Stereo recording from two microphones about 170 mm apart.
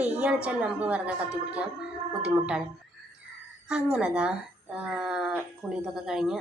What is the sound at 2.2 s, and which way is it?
Speech, 5° right (ahead or behind).